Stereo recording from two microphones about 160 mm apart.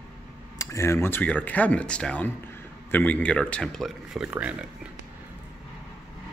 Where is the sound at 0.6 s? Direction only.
20° left (ahead or behind); by 4.6 s 10° right (ahead or behind).